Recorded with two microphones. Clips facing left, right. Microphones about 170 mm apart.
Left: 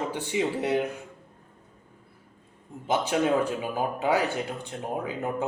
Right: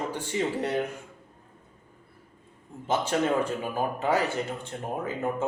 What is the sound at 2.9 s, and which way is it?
Speech, 5° left (ahead or behind).